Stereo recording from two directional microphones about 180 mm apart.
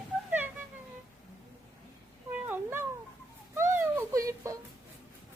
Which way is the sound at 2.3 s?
10° right (ahead or behind).